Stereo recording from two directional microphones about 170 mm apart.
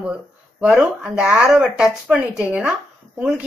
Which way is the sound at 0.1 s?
5° right (ahead or behind).